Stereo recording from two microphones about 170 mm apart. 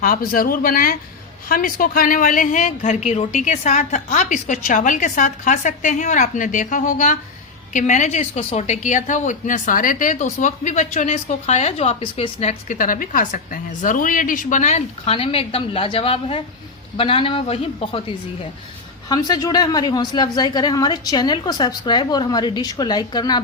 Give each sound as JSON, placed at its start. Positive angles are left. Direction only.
{"t": 0.0, "sound": "a woman's voice", "side_deg": 55}
{"t": 19.0, "sound": "a woman's voice", "side_deg": 20}